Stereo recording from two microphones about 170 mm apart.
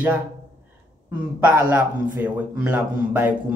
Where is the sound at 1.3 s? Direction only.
10° right (ahead or behind).